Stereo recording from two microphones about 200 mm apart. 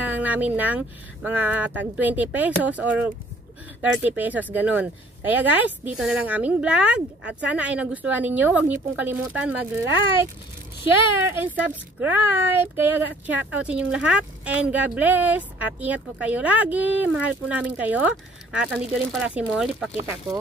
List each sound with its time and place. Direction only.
0.0 s speech: 10° right (ahead or behind)
11.3 s speech: 10° right (ahead or behind)